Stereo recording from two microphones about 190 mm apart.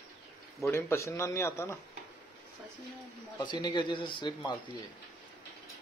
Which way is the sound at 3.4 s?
20° left (ahead or behind).